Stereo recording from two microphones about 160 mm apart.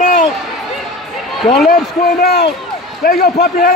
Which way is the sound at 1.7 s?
70° left (ahead or behind).